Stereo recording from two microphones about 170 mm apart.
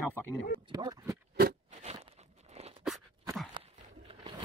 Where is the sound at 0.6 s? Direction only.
25° right (ahead or behind).